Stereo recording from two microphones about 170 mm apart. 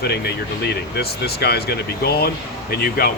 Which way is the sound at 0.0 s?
70° left (ahead or behind).